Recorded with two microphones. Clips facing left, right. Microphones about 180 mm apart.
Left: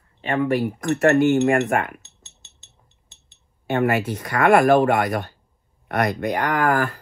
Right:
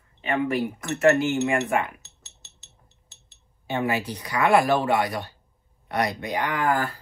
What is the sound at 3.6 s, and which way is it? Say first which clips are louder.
Speech: left 5 dB; 60° left (ahead or behind).